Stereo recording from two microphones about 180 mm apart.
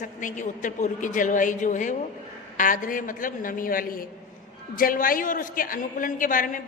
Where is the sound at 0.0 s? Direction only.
45° left (ahead or behind).